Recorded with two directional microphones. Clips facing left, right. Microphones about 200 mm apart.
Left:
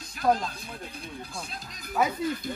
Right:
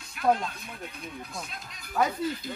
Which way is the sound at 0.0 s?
35° left (ahead or behind).